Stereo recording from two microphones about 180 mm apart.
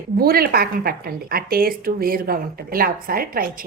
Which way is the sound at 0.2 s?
55° right (ahead or behind).